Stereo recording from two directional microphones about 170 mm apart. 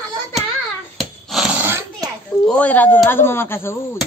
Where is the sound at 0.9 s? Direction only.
Centre (ahead or behind).